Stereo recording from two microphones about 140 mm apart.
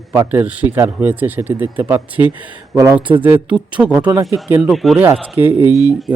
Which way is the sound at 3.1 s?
10° right (ahead or behind).